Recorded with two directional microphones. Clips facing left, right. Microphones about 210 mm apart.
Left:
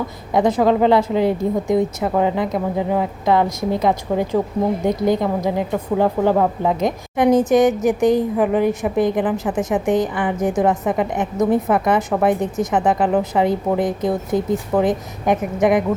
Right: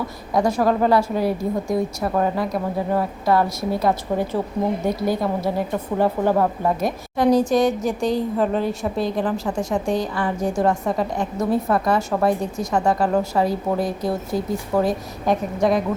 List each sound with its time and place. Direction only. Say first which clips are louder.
0.3 s a woman's voice: left 3 dB; 20° left (ahead or behind)